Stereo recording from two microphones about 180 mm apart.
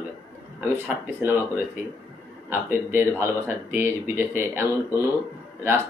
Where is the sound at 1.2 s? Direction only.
10° right (ahead or behind).